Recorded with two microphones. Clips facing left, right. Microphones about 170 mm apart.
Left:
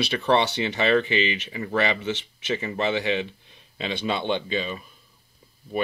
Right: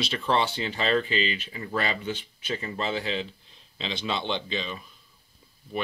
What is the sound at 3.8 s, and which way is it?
Speech, 55° left (ahead or behind).